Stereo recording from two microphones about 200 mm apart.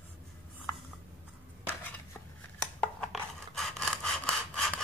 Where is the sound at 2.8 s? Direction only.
5° left (ahead or behind).